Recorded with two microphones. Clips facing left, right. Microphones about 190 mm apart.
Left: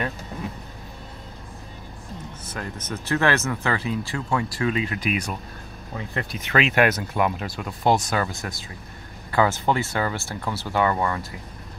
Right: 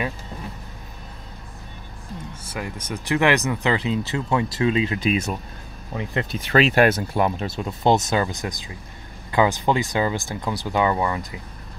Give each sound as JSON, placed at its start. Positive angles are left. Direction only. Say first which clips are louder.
{"t": 2.5, "sound": "speech", "louder": "right 2 dB", "side_deg": -10}
{"t": 6.4, "sound": "speech", "louder": "right 3 dB", "side_deg": -35}